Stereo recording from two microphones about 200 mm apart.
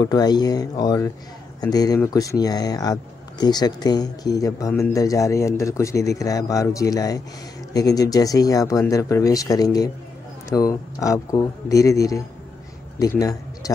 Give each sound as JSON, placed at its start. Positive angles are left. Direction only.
{"t": 0.0, "sound": "speech", "side_deg": 20}